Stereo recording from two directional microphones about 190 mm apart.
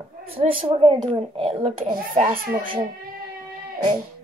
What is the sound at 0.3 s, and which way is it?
A child's voice, 30° right (ahead or behind).